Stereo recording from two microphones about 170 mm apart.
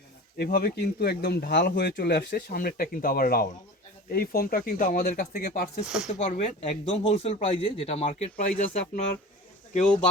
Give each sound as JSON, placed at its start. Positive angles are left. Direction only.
{"t": 0.3, "sound": "speech", "side_deg": 60}
{"t": 5.8, "sound": "speech", "side_deg": -5}
{"t": 6.1, "sound": "speech", "side_deg": 45}